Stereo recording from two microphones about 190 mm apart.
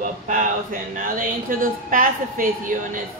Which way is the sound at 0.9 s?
45° right (ahead or behind).